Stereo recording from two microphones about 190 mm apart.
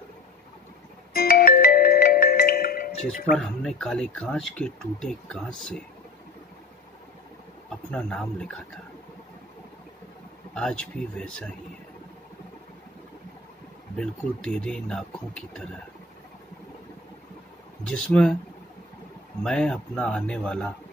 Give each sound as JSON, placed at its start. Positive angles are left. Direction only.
{"t": 1.1, "sound": "music", "side_deg": 50}
{"t": 3.3, "sound": "speech", "side_deg": 5}
{"t": 7.9, "sound": "speech", "side_deg": 5}
{"t": 10.5, "sound": "speech", "side_deg": 5}
{"t": 13.9, "sound": "speech", "side_deg": 5}
{"t": 17.8, "sound": "speech", "side_deg": 5}
{"t": 19.4, "sound": "speech", "side_deg": 5}